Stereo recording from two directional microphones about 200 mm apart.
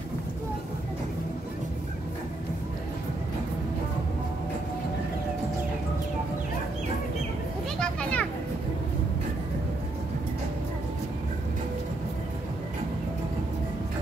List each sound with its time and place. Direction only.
7.8 s children playing: 5° left (ahead or behind)